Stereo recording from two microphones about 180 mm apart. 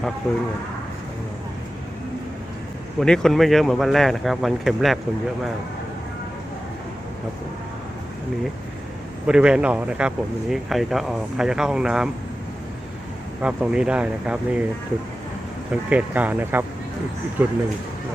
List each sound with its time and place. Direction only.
3.0 s speech: 5° left (ahead or behind)
9.2 s speech: 5° right (ahead or behind)
13.4 s speech: 5° right (ahead or behind)
15.7 s speech: 5° right (ahead or behind)